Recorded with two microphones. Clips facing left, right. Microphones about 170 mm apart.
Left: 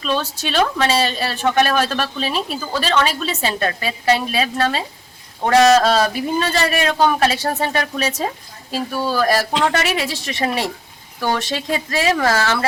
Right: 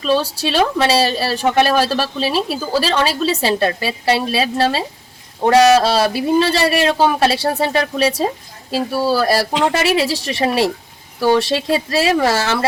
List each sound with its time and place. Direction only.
0.0 s a woman's voice: 35° right (ahead or behind)
5.7 s speech: 10° right (ahead or behind)
6.1 s a woman's voice: 30° right (ahead or behind)
9.5 s speech: 10° right (ahead or behind)
9.7 s a woman's voice: 35° right (ahead or behind)
12.1 s speech: 15° right (ahead or behind)